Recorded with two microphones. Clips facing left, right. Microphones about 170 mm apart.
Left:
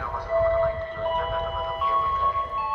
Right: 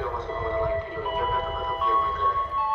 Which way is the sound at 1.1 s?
5° right (ahead or behind).